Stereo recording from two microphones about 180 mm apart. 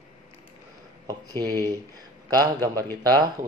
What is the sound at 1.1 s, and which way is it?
Speech, 20° right (ahead or behind).